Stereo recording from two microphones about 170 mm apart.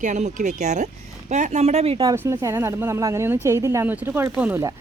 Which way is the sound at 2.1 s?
15° right (ahead or behind).